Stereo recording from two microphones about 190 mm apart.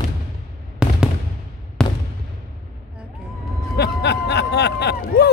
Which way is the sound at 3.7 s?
60° left (ahead or behind).